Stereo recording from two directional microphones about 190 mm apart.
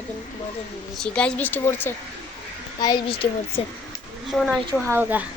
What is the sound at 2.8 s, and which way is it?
Speech, 25° left (ahead or behind).